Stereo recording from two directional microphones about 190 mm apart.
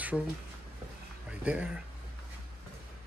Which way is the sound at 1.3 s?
5° right (ahead or behind).